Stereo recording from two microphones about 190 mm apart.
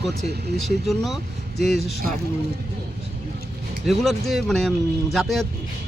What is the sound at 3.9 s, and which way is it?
Speech, centre (ahead or behind).